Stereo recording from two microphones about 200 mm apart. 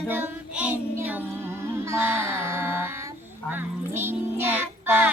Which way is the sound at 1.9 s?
10° right (ahead or behind).